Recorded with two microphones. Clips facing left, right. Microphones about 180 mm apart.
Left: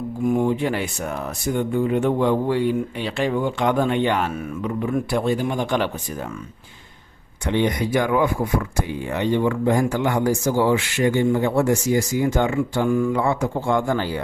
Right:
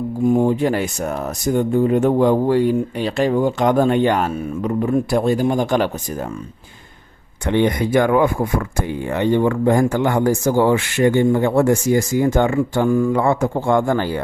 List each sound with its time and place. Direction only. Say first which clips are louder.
0.3 s speech: right 4 dB; 35° right (ahead or behind)
7.4 s speech: right 4 dB; 55° right (ahead or behind)